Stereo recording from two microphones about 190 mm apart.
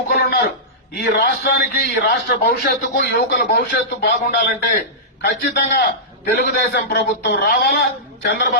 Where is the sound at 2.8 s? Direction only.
55° left (ahead or behind).